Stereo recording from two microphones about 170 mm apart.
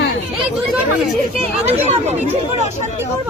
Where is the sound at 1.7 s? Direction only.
40° right (ahead or behind).